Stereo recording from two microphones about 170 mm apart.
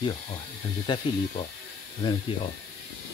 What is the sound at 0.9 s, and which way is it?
Speech, 25° left (ahead or behind).